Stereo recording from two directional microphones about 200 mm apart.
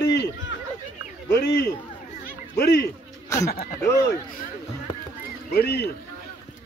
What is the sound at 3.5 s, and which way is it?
Speech, 45° left (ahead or behind).